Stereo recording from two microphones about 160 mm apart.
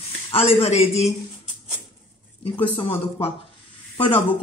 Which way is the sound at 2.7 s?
30° left (ahead or behind).